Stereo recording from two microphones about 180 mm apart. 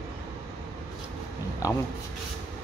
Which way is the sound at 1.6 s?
20° left (ahead or behind).